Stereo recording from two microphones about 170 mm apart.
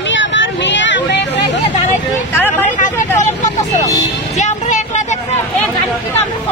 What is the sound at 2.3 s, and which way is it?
Vehicle, 10° left (ahead or behind).